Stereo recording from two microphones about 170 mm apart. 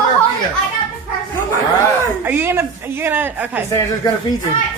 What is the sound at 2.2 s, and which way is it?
Speech, 10° right (ahead or behind).